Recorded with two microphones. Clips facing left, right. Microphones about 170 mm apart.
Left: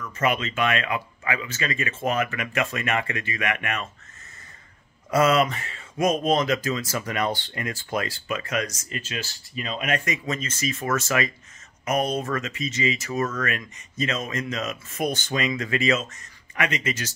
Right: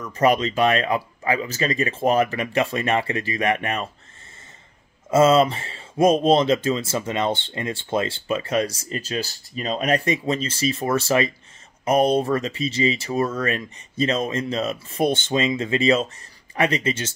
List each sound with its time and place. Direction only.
0.0 s speech: 35° right (ahead or behind)
5.1 s speech: 25° right (ahead or behind)